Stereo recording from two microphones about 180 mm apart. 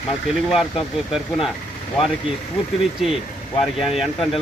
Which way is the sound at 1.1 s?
Centre (ahead or behind).